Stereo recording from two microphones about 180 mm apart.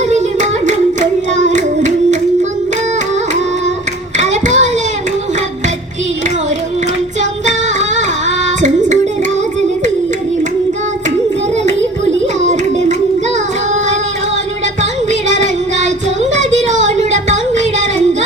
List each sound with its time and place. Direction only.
0.1 s hands: 40° right (ahead or behind)
1.4 s child singing: 40° right (ahead or behind)
4.2 s child singing: 40° right (ahead or behind)
7.2 s music: 40° right (ahead or behind)
14.8 s music: 40° right (ahead or behind)
16.6 s a sound: 40° right (ahead or behind)